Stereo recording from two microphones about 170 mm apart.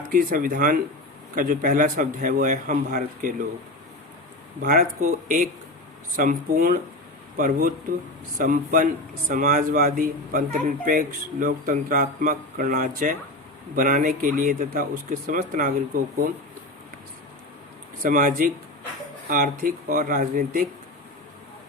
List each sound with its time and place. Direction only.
0.1 s a man's voice: 55° right (ahead or behind)
4.6 s a man's voice: 55° right (ahead or behind)
18.0 s a man's voice: 50° right (ahead or behind)